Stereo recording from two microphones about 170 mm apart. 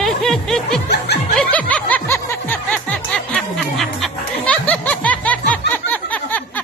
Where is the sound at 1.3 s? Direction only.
5° left (ahead or behind).